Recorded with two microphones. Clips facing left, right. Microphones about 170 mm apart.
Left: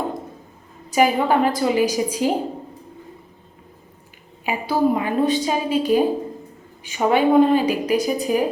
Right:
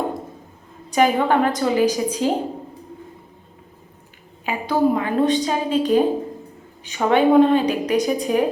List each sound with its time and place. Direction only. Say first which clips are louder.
0.9 s a woman's voice: even; 5° left (ahead or behind)
4.4 s a woman's voice: even; 10° left (ahead or behind)